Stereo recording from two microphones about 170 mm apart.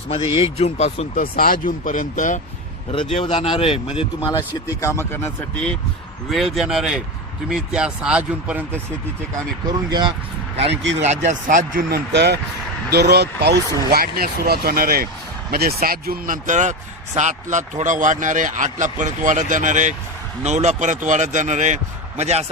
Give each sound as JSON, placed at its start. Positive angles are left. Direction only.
{"t": 0.1, "sound": "speech", "side_deg": 35}
{"t": 1.1, "sound": "speech", "side_deg": 60}
{"t": 2.9, "sound": "speech", "side_deg": 30}
{"t": 6.3, "sound": "speech", "side_deg": 0}
{"t": 11.0, "sound": "speech", "side_deg": -45}